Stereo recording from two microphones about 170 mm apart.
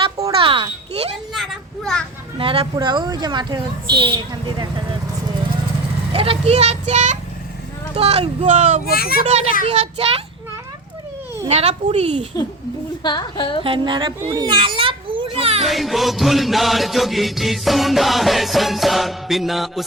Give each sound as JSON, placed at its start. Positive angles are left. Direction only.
{"t": 0.3, "sound": "a child's voice", "side_deg": -30}
{"t": 1.3, "sound": "a child's voice", "side_deg": 0}
{"t": 2.4, "sound": "a woman's voice", "side_deg": -30}
{"t": 6.1, "sound": "speech", "side_deg": -35}
{"t": 8.9, "sound": "speech", "side_deg": 65}
{"t": 9.2, "sound": "speech", "side_deg": -40}
{"t": 11.4, "sound": "speech", "side_deg": -40}
{"t": 13.0, "sound": "a woman's voice", "side_deg": 25}
{"t": 13.7, "sound": "a woman's voice", "side_deg": -30}
{"t": 14.2, "sound": "a child's voice", "side_deg": -15}
{"t": 14.4, "sound": "children playing", "side_deg": -30}
{"t": 15.6, "sound": "music", "side_deg": 0}